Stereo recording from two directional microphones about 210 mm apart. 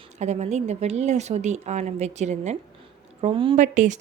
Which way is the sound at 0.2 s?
30° right (ahead or behind).